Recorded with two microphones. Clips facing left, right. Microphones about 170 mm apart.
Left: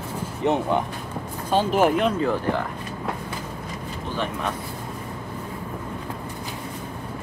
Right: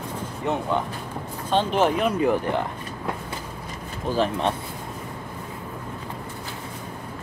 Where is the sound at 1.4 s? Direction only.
10° left (ahead or behind).